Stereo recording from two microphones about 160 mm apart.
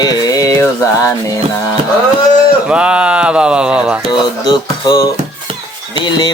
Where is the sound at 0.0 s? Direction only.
25° left (ahead or behind).